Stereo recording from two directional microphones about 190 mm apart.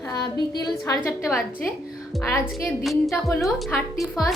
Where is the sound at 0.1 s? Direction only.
20° left (ahead or behind).